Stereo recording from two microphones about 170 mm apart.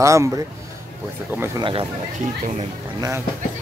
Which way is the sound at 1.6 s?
30° right (ahead or behind).